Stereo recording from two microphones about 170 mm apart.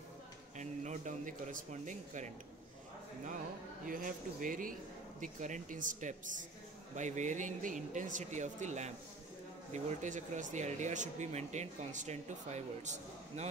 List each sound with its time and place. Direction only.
0.6 s speech: 45° right (ahead or behind)
3.8 s speech: 55° right (ahead or behind)